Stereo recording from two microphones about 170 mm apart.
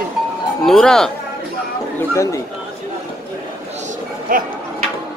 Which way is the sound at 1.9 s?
15° left (ahead or behind).